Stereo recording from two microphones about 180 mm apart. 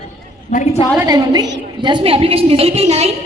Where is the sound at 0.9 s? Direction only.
20° right (ahead or behind).